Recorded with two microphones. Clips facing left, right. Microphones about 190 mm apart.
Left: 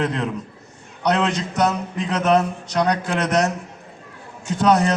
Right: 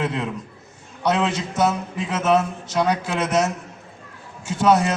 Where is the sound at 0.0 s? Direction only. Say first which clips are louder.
Left 2 dB; 10° right (ahead or behind).